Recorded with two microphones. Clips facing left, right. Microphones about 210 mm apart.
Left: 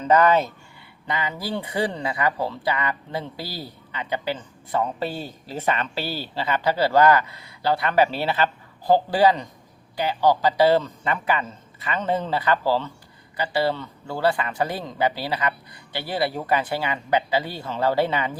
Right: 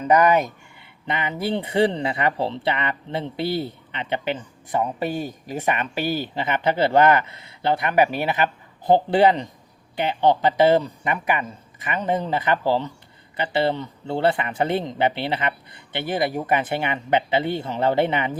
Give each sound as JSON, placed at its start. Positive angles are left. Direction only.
{"t": 0.0, "sound": "speech", "side_deg": -15}